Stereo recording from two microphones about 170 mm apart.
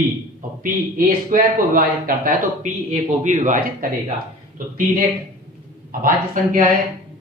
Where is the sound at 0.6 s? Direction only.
55° right (ahead or behind).